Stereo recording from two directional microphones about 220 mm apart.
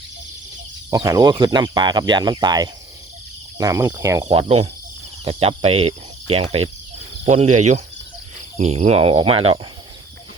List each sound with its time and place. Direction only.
0.9 s speech: 15° right (ahead or behind)
4.3 s speech: 25° right (ahead or behind)